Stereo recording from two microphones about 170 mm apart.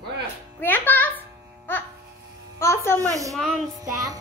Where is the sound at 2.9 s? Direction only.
20° right (ahead or behind).